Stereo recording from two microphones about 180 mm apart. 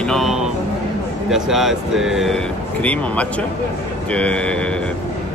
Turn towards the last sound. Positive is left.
turn(degrees=5)  # may be behind; listen again after turning